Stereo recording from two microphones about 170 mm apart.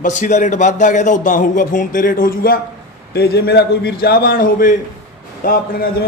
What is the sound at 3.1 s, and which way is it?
A man's voice, 75° left (ahead or behind).